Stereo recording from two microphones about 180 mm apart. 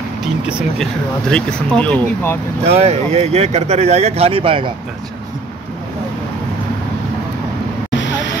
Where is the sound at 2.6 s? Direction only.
35° right (ahead or behind).